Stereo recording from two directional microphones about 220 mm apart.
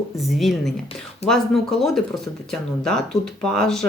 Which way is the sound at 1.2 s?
30° left (ahead or behind).